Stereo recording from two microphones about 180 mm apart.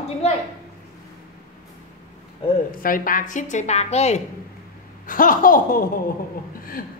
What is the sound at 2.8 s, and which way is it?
A woman's voice, 50° left (ahead or behind).